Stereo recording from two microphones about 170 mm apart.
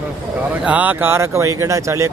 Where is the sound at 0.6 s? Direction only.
10° right (ahead or behind).